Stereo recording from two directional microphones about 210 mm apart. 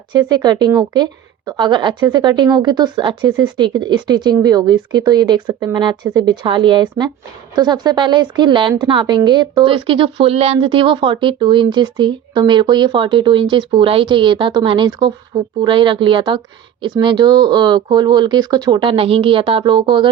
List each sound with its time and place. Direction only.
0.1 s speech: 20° right (ahead or behind)